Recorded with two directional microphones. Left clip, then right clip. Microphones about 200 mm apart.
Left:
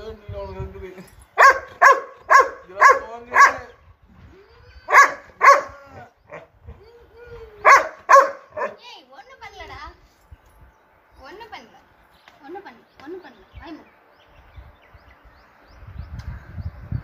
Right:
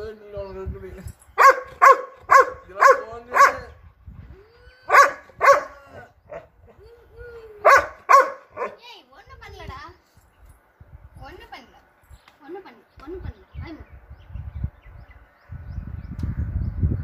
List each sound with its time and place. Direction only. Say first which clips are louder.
1.3 s dog: left 1 dB; 10° right (ahead or behind)
4.8 s dog: left 1 dB; 10° right (ahead or behind)
7.6 s dog: left 2 dB; 10° right (ahead or behind)